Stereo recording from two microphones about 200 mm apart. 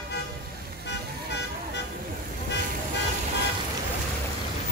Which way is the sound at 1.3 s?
60° left (ahead or behind).